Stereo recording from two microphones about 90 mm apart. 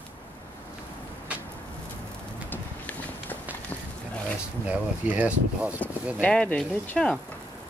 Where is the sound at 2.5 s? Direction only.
20° left (ahead or behind).